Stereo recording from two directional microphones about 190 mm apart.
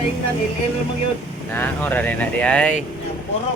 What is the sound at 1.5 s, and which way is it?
Speech, 10° left (ahead or behind).